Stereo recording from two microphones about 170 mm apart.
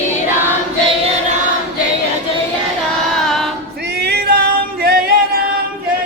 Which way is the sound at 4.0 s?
70° right (ahead or behind).